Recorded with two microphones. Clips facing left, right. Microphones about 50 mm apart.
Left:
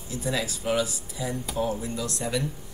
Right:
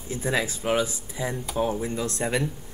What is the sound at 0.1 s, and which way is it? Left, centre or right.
Speech, right.